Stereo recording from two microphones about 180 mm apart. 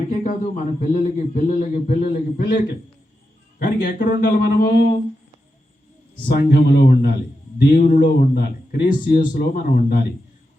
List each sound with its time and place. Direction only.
0.1 s a man's voice: 45° left (ahead or behind)
6.2 s a man's voice: 60° left (ahead or behind)